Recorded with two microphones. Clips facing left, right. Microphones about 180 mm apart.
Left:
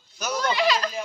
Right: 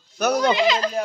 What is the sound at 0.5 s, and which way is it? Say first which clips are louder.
Speech: right 3 dB; 20° right (ahead or behind).